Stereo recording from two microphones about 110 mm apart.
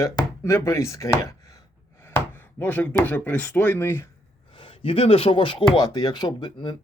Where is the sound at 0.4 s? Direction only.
25° left (ahead or behind).